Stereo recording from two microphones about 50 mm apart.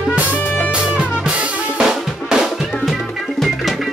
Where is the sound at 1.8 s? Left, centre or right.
Centre.